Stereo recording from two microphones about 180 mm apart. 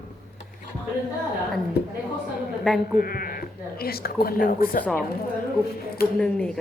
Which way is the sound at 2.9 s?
55° left (ahead or behind).